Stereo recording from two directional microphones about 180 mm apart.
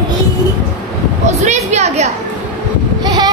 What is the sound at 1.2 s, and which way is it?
Speech, 40° right (ahead or behind).